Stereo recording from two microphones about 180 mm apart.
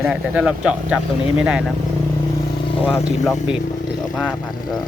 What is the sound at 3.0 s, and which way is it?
Speech, centre (ahead or behind).